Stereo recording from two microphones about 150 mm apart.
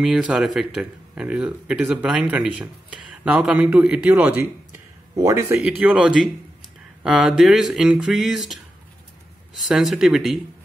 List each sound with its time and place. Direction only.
0.0 s speech: 5° right (ahead or behind); by 5.6 s 20° right (ahead or behind)
5.8 s speech: 10° right (ahead or behind)
9.7 s speech: centre (ahead or behind)